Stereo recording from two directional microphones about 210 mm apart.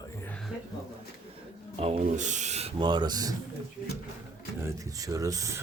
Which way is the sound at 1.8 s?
30° right (ahead or behind).